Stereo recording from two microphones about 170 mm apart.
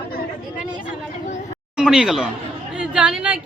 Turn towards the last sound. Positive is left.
turn(degrees=-5)  # may be behind; listen again after turning